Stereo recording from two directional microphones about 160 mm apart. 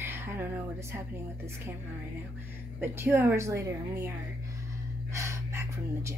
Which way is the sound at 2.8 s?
15° right (ahead or behind).